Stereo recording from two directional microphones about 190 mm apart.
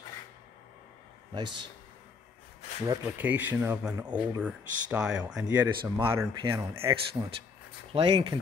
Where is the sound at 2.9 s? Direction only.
10° right (ahead or behind).